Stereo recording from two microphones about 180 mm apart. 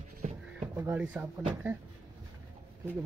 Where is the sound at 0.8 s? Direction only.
10° right (ahead or behind).